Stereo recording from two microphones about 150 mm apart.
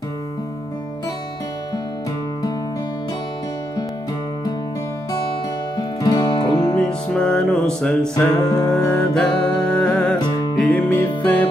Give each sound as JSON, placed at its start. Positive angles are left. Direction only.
{"t": 5.8, "sound": "music", "side_deg": 25}
{"t": 6.7, "sound": "music", "side_deg": 5}
{"t": 8.4, "sound": "music", "side_deg": 25}
{"t": 8.9, "sound": "music", "side_deg": 5}
{"t": 10.1, "sound": "music", "side_deg": 25}
{"t": 10.7, "sound": "music", "side_deg": 10}